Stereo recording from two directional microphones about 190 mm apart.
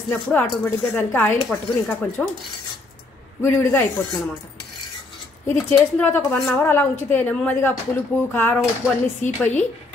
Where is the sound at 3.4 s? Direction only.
10° left (ahead or behind).